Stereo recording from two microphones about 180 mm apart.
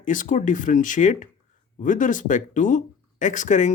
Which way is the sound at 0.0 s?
45° left (ahead or behind).